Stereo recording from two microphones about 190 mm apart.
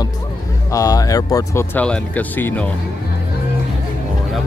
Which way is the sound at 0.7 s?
20° left (ahead or behind).